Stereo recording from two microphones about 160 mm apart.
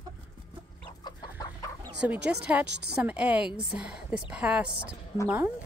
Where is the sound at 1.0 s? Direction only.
25° left (ahead or behind).